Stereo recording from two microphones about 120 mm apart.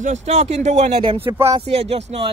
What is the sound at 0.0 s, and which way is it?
Speech, 70° right (ahead or behind).